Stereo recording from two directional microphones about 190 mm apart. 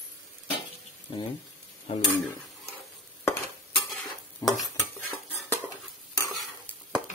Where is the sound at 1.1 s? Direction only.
25° left (ahead or behind).